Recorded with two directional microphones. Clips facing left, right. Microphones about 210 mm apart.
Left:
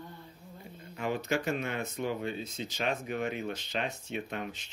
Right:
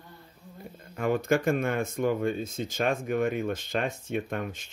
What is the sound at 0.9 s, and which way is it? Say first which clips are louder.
Speech: right 6 dB; 50° right (ahead or behind).